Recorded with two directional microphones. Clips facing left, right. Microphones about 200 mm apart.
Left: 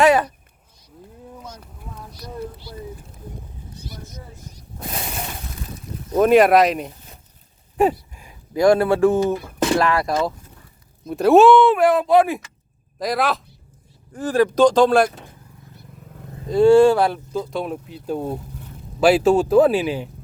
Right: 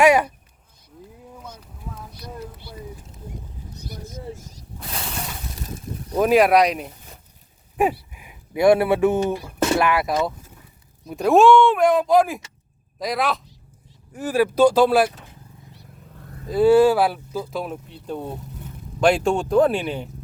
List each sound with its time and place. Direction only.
0.0 s speech: 10° right (ahead or behind)
6.1 s speech: centre (ahead or behind)
8.1 s a sound: 15° right (ahead or behind)
9.1 s speech: 10° right (ahead or behind)
16.5 s speech: 5° right (ahead or behind)